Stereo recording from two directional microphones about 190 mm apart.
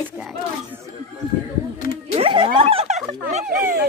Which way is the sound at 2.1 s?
30° right (ahead or behind).